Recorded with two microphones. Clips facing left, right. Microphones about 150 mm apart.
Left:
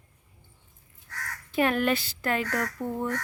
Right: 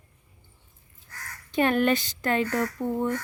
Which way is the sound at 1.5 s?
Centre (ahead or behind).